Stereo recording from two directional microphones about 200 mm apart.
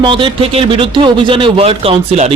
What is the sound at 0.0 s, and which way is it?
Speech, 25° right (ahead or behind).